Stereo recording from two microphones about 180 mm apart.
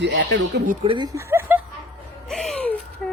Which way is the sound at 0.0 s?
75° right (ahead or behind).